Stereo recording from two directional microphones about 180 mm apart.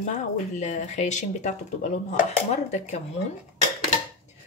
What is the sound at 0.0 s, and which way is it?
Speech, 40° left (ahead or behind).